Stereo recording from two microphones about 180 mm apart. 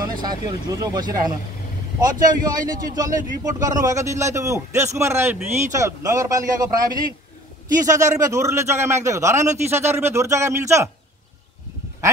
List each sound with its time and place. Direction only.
0.0 s a man's voice: 25° right (ahead or behind)
7.8 s a man's voice: 20° right (ahead or behind)